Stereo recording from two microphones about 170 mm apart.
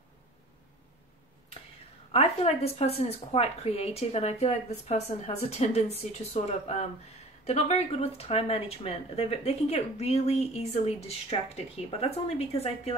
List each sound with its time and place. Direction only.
2.1 s speech: 35° left (ahead or behind)